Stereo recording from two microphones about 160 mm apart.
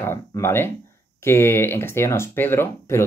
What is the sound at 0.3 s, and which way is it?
Speech, 15° left (ahead or behind).